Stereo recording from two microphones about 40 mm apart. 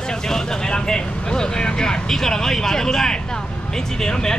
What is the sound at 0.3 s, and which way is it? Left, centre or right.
Speech, centre.